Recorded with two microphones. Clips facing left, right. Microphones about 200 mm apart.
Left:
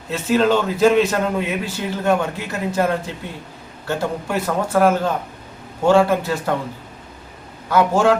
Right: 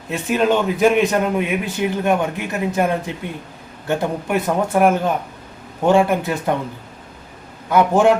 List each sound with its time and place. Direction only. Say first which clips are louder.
0.1 s a man's voice: left 1 dB; 15° right (ahead or behind)
7.7 s a man's voice: right 2 dB; 15° right (ahead or behind)